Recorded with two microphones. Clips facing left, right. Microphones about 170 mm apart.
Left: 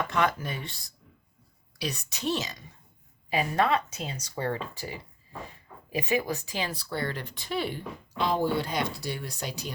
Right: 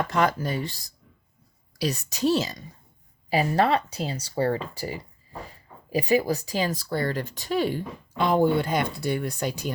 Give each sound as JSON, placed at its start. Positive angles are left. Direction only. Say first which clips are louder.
{"t": 0.0, "sound": "speech", "louder": "right 4 dB", "side_deg": -40}
{"t": 8.2, "sound": "speech", "louder": "right 5 dB", "side_deg": -55}